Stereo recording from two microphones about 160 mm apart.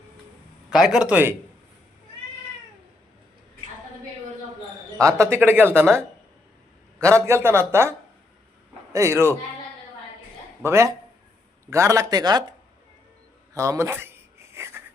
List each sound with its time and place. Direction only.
0.7 s speech: centre (ahead or behind)
5.3 s a man's voice: 15° right (ahead or behind)
10.6 s a man's voice: 15° right (ahead or behind)
13.5 s a sound: 20° right (ahead or behind)